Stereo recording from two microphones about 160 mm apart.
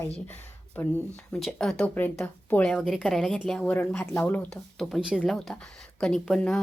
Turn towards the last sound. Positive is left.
turn(degrees=5)  # may be behind; listen again after turning